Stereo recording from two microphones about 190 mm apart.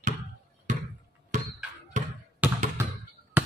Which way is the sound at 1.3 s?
40° right (ahead or behind).